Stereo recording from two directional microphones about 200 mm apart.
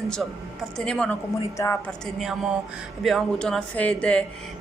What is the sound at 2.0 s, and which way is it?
Speech, centre (ahead or behind).